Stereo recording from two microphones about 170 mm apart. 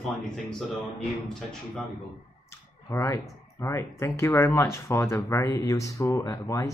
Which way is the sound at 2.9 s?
15° left (ahead or behind).